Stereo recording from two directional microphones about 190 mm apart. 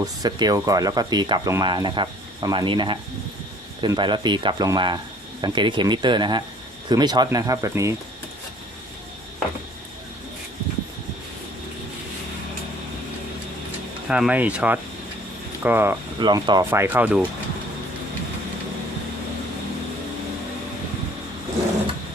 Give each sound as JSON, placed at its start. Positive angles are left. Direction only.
{"t": 0.0, "sound": "speech", "side_deg": -20}
{"t": 14.1, "sound": "speech", "side_deg": -5}
{"t": 16.2, "sound": "speech", "side_deg": -20}